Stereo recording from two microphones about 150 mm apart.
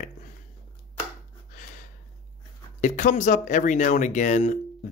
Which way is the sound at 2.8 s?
55° left (ahead or behind).